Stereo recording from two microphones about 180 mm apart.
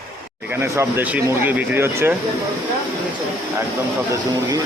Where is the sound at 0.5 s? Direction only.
10° right (ahead or behind).